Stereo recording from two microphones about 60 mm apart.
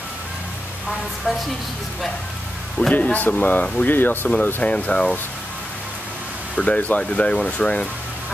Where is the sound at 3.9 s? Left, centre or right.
Left.